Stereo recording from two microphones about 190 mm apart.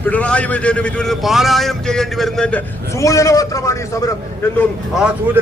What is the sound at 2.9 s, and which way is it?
A man's voice, 15° left (ahead or behind).